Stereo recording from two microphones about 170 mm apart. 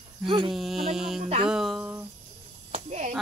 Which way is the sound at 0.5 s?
Centre (ahead or behind).